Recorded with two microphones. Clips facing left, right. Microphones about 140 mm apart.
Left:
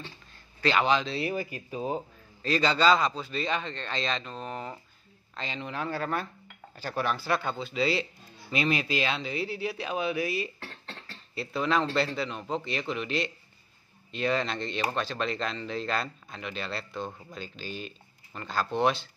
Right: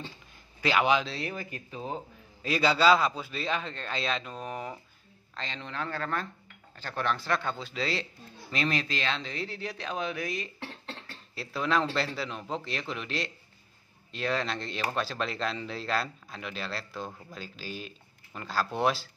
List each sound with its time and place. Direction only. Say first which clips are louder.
0.6 s a man's voice: even; 10° right (ahead or behind)
1.1 s speech: left 5 dB; 10° left (ahead or behind)
2.4 s a man's voice: even; 10° right (ahead or behind)
5.3 s speech: left 3 dB; 5° left (ahead or behind)